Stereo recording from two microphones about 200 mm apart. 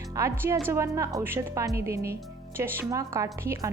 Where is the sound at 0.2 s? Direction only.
15° right (ahead or behind).